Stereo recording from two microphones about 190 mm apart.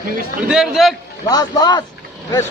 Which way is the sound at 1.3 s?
20° left (ahead or behind).